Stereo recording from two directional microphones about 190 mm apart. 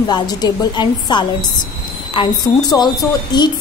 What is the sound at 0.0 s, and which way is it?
A woman's voice, 20° left (ahead or behind).